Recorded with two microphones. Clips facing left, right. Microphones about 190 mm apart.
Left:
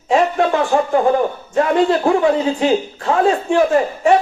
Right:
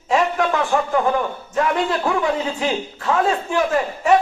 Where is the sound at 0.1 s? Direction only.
35° left (ahead or behind).